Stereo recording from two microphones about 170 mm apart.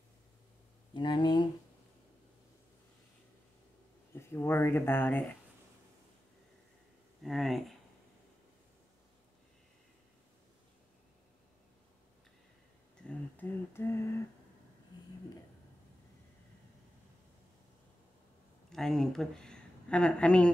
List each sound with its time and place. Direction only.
0.9 s speech: 30° left (ahead or behind)
4.1 s speech: 15° left (ahead or behind)
7.2 s speech: centre (ahead or behind)
13.0 s a sound: 10° left (ahead or behind)
18.7 s speech: centre (ahead or behind)